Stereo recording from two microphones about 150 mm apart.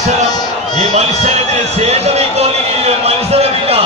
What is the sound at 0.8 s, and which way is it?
Speech, 50° right (ahead or behind).